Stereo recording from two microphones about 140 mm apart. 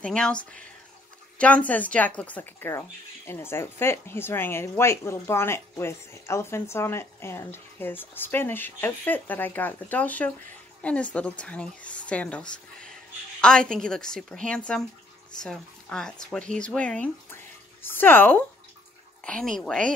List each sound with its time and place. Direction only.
0.0 s speech: 5° left (ahead or behind)
1.4 s a woman's voice: 10° left (ahead or behind)